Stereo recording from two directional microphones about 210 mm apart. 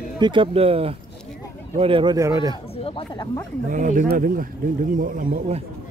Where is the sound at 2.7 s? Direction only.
25° left (ahead or behind).